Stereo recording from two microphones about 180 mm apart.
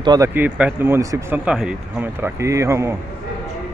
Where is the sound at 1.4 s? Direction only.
5° right (ahead or behind).